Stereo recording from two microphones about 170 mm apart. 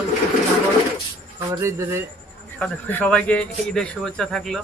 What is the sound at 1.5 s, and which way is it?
Speech, 15° right (ahead or behind).